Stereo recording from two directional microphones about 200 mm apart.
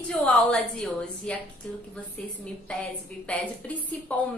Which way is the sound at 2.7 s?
5° left (ahead or behind).